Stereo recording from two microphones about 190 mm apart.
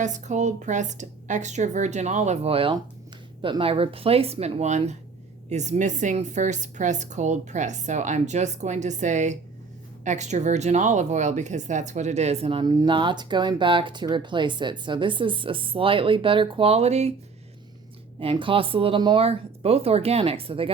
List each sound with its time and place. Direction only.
0.0 s a woman's voice: 40° right (ahead or behind)
18.2 s speech: 30° right (ahead or behind)